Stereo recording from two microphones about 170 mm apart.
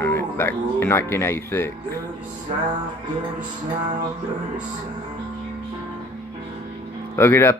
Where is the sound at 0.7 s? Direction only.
15° left (ahead or behind).